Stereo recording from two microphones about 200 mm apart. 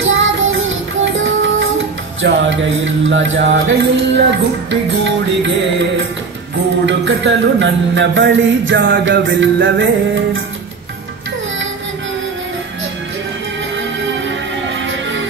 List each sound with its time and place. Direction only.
0.0 s music: 75° right (ahead or behind)